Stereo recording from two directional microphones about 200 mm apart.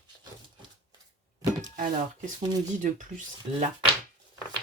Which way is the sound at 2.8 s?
40° right (ahead or behind).